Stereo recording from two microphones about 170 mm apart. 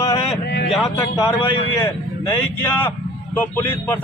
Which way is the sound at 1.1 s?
20° left (ahead or behind).